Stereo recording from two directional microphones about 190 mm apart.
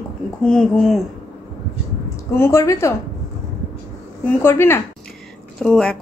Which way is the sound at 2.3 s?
15° left (ahead or behind).